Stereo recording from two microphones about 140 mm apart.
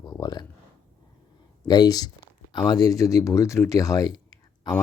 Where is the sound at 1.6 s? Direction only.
30° left (ahead or behind).